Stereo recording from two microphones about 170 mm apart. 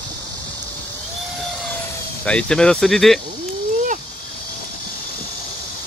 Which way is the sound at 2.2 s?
5° left (ahead or behind).